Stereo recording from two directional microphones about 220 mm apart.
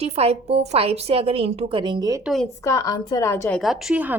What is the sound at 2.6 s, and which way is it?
A woman's voice, 15° left (ahead or behind).